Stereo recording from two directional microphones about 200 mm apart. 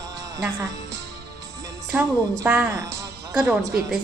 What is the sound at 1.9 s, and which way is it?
Speech, 10° right (ahead or behind).